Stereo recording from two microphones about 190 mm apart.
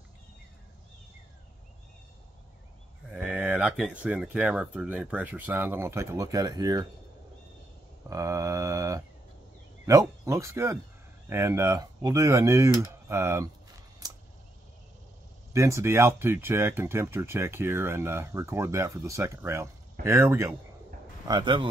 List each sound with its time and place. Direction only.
3.1 s speech: 5° right (ahead or behind)
8.1 s a sound: 15° right (ahead or behind)
9.8 s speech: 15° right (ahead or behind)
14.0 s a sound: 20° right (ahead or behind)
15.5 s speech: 15° right (ahead or behind)
21.3 s speech: 25° right (ahead or behind)